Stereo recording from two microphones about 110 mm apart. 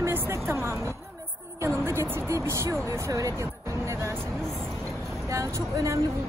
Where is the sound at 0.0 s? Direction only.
20° right (ahead or behind).